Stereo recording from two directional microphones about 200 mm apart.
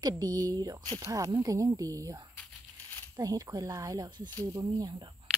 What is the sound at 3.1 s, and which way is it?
Speech, 15° right (ahead or behind).